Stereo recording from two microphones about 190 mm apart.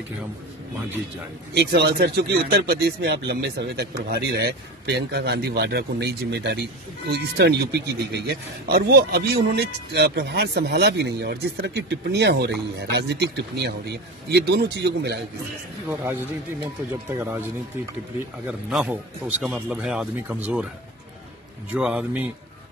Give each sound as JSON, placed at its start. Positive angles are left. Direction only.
{"t": 1.5, "sound": "speech", "side_deg": -60}
{"t": 15.9, "sound": "speech", "side_deg": -10}
{"t": 18.7, "sound": "speech", "side_deg": -5}
{"t": 21.7, "sound": "speech", "side_deg": -5}